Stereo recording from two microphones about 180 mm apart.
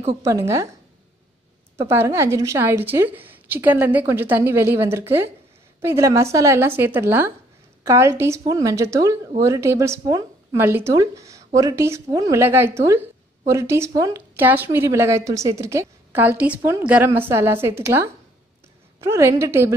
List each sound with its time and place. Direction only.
0.2 s speech: 15° right (ahead or behind)
1.8 s speech: 15° right (ahead or behind)